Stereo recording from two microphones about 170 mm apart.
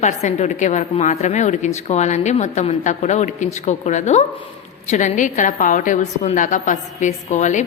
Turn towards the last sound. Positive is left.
turn(degrees=45)  # may be behind; listen again after turning